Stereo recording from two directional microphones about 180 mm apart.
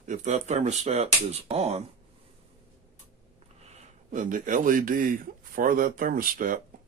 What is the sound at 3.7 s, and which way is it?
Speech, 40° right (ahead or behind).